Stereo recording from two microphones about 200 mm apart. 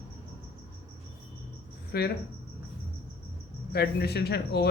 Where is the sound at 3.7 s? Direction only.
50° left (ahead or behind).